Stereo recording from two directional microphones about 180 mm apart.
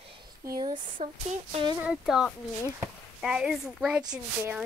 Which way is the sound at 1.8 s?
5° right (ahead or behind).